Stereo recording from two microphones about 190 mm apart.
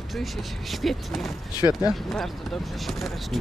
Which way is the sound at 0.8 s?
Centre (ahead or behind).